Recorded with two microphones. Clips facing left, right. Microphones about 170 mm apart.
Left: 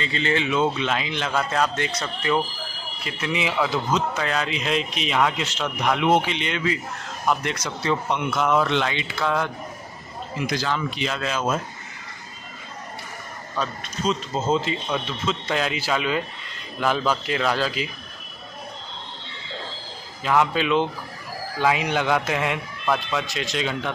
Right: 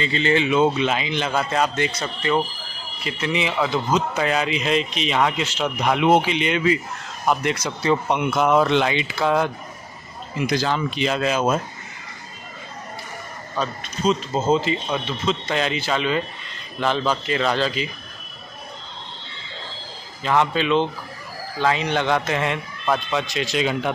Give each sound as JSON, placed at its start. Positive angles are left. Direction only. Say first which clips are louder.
{"t": 0.0, "sound": "a man's voice", "louder": "right 4 dB", "side_deg": 0}
{"t": 13.6, "sound": "a man's voice", "louder": "right 2 dB", "side_deg": 0}
{"t": 20.2, "sound": "a man's voice", "louder": "right 1 dB", "side_deg": 5}